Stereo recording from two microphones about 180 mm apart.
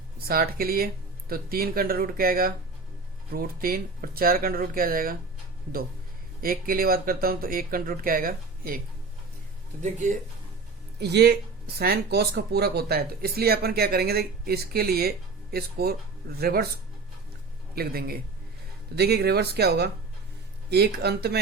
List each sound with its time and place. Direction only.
0.3 s speech: 55° right (ahead or behind)
6.4 s speech: 55° right (ahead or behind)
9.8 s speech: 40° right (ahead or behind)
11.0 s speech: 65° right (ahead or behind)
17.7 s speech: 55° right (ahead or behind)